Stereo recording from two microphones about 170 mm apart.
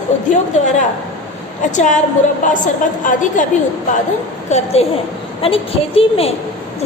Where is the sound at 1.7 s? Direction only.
45° left (ahead or behind).